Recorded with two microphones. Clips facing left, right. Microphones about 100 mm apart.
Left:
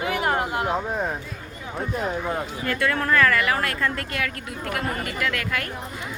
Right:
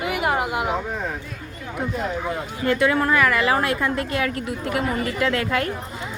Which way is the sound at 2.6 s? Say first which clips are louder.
Right 5 dB; 20° right (ahead or behind).